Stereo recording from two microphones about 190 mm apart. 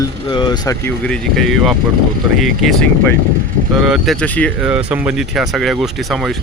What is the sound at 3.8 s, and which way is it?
Speech, centre (ahead or behind).